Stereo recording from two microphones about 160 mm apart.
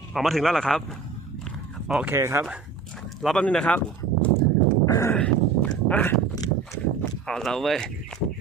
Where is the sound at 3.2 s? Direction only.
5° left (ahead or behind).